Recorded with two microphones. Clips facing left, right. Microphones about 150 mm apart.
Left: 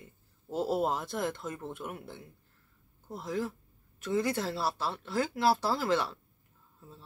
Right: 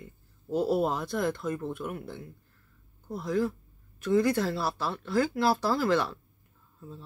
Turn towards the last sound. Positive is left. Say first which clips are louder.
# right 3 dB
turn(degrees=20)  # may be behind; listen again after turning